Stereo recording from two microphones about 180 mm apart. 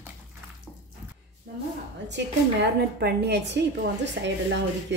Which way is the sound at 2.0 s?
75° right (ahead or behind).